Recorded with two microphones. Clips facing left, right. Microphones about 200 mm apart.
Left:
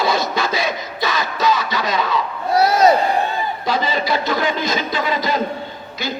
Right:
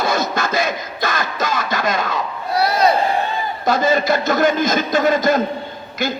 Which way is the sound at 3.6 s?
45° right (ahead or behind).